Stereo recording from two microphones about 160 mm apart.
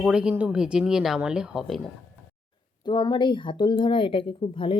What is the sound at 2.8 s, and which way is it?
Speech, 25° left (ahead or behind).